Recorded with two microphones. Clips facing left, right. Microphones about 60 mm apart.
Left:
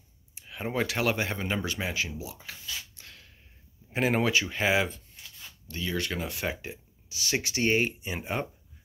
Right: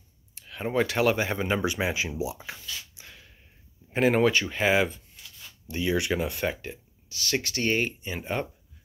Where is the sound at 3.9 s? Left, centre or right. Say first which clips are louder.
Right 4 dB; centre.